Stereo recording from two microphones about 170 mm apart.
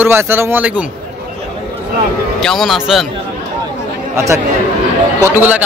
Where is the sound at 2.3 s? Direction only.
Centre (ahead or behind).